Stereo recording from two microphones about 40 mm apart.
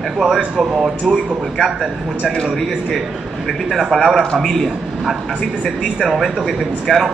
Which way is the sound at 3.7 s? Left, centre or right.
Centre.